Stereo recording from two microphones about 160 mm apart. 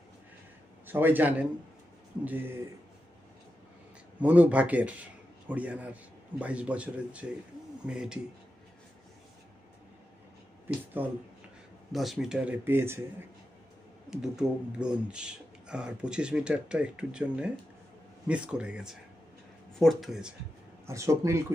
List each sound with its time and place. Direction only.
0.8 s speech: 10° right (ahead or behind)
4.2 s speech: 10° right (ahead or behind)
11.0 s speech: 10° right (ahead or behind)
11.9 s speech: centre (ahead or behind)
14.1 s speech: 5° right (ahead or behind)
20.8 s speech: 20° right (ahead or behind)